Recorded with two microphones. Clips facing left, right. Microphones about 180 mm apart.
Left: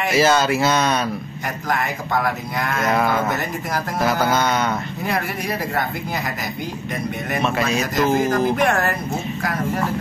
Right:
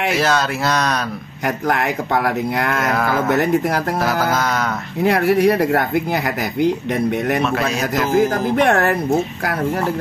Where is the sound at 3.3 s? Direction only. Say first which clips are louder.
Right 9 dB; 65° right (ahead or behind).